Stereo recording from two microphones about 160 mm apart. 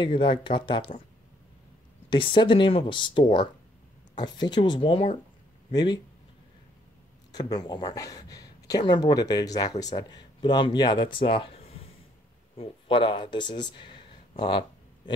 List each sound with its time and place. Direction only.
0.0 s speech: 30° left (ahead or behind)
2.0 s speech: 30° left (ahead or behind)
7.3 s speech: 25° left (ahead or behind)